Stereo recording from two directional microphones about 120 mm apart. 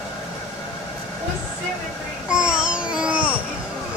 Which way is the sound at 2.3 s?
10° right (ahead or behind).